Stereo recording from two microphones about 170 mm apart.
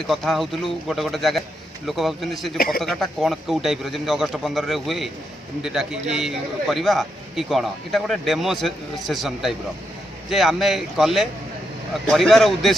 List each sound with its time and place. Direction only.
0.0 s a man's voice: centre (ahead or behind)
2.5 s speech: 60° left (ahead or behind)
2.8 s a man's voice: centre (ahead or behind)